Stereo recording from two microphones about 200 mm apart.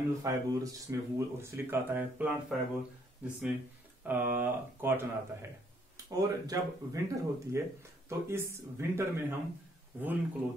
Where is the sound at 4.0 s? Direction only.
10° right (ahead or behind).